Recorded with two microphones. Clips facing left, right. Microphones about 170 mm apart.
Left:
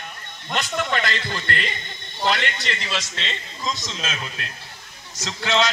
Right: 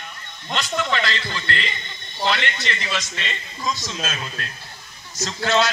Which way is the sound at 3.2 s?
20° left (ahead or behind).